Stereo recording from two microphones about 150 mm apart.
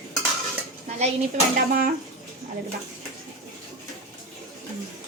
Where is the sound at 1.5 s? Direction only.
65° right (ahead or behind).